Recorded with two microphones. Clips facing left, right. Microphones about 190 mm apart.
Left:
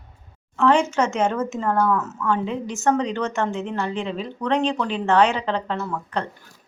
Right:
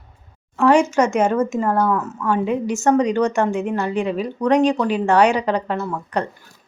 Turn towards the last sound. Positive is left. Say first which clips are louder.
# right 3 dB
turn(degrees=-15)  # may be behind; listen again after turning